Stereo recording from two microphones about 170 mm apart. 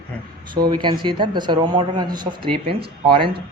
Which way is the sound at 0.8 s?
25° right (ahead or behind).